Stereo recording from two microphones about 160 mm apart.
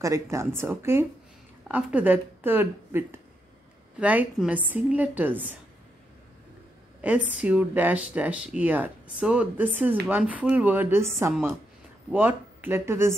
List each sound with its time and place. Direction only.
0.0 s speech: 20° right (ahead or behind)
7.2 s a woman's voice: 50° left (ahead or behind)
7.4 s speech: 10° right (ahead or behind)
12.1 s speech: 10° right (ahead or behind)